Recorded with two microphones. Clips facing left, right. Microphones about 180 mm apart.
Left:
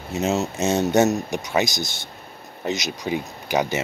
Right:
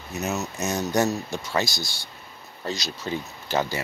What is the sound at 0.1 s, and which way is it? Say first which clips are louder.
Speech: left 6 dB; 25° left (ahead or behind).